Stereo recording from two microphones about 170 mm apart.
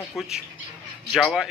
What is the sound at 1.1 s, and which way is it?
Speech, 5° right (ahead or behind).